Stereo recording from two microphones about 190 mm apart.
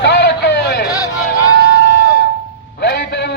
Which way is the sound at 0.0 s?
60° left (ahead or behind).